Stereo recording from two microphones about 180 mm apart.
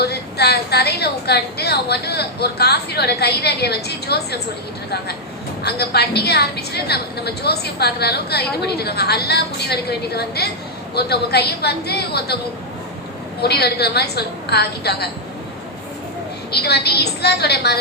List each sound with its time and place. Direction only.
0.0 s a woman's voice: 65° left (ahead or behind)
5.6 s a woman's voice: 65° left (ahead or behind)
13.4 s a woman's voice: 65° left (ahead or behind)
16.5 s a woman's voice: 65° left (ahead or behind)